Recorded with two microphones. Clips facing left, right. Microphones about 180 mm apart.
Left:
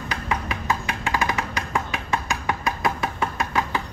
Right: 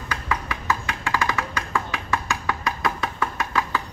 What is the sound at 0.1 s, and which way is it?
Music, 20° left (ahead or behind).